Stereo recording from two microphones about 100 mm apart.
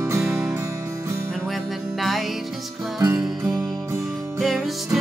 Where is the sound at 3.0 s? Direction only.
40° right (ahead or behind).